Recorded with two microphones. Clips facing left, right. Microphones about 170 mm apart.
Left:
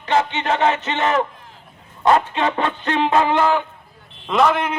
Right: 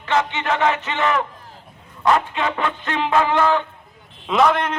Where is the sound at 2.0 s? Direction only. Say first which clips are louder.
Left 2 dB; 35° left (ahead or behind); by 3.6 s 20° left (ahead or behind).